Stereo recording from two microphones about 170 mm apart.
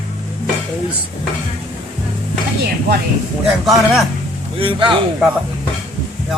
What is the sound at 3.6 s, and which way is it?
Speech, centre (ahead or behind).